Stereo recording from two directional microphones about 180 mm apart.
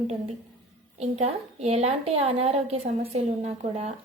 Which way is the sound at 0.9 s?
40° right (ahead or behind).